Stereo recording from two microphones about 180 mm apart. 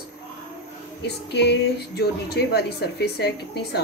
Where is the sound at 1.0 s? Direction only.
70° left (ahead or behind).